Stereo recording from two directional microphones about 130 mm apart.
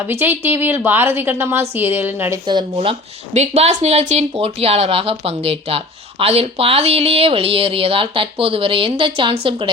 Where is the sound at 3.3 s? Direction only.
60° right (ahead or behind); by 9.7 s 40° right (ahead or behind).